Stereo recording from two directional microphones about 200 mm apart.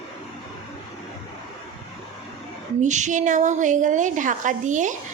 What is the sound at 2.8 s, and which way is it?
A woman's voice, 35° right (ahead or behind).